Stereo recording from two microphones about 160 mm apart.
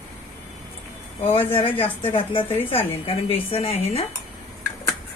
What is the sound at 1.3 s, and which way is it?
A woman's voice, 35° left (ahead or behind).